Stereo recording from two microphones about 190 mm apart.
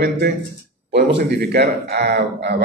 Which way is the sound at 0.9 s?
60° right (ahead or behind).